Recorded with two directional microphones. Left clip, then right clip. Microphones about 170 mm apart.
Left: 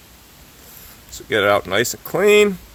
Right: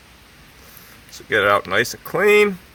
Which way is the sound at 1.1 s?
40° left (ahead or behind).